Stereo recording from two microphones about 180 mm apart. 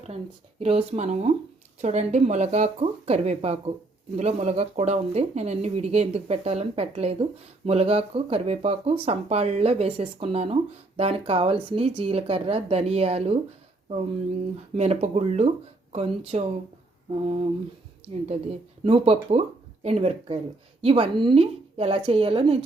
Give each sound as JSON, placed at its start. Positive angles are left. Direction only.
{"t": 0.6, "sound": "speech", "side_deg": -35}
{"t": 14.8, "sound": "speech", "side_deg": -40}
{"t": 18.9, "sound": "speech", "side_deg": -30}